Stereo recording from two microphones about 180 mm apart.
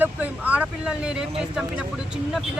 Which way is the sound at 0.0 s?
10° right (ahead or behind).